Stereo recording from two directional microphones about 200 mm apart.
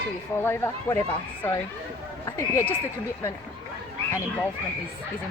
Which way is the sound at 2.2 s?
15° left (ahead or behind).